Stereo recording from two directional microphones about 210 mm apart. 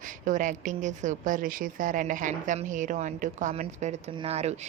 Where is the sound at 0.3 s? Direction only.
35° right (ahead or behind).